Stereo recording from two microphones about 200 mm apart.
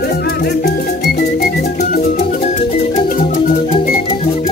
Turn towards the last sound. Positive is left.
turn(degrees=40)  # may be behind; listen again after turning